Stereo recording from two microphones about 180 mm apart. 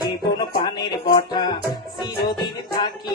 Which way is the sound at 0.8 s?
25° left (ahead or behind).